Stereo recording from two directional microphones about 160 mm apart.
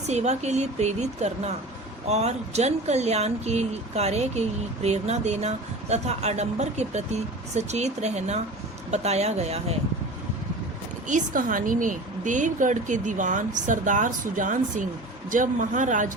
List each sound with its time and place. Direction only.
0.1 s speech: 45° right (ahead or behind)
11.1 s speech: 55° right (ahead or behind)